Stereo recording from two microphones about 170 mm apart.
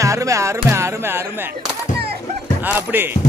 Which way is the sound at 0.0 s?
20° right (ahead or behind).